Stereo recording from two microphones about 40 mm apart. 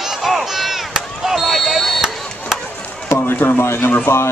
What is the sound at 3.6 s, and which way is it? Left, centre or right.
Speech, left.